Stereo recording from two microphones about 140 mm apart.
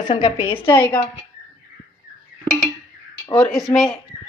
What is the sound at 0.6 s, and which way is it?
Speech, 35° left (ahead or behind).